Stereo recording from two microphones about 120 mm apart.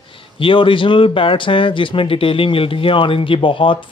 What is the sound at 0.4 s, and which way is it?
Speech, 45° left (ahead or behind).